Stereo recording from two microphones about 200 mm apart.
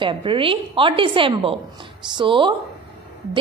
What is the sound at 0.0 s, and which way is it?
A woman's voice, 25° right (ahead or behind).